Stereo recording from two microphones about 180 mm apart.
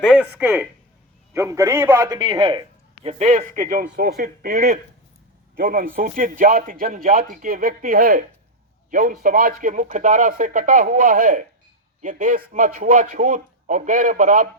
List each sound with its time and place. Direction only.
0.0 s a man's voice: 5° right (ahead or behind); by 14.4 s 45° right (ahead or behind)